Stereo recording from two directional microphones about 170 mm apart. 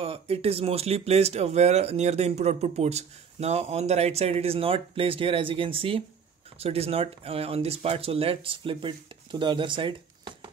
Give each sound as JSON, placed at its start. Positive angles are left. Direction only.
{"t": 0.0, "sound": "speech", "side_deg": -35}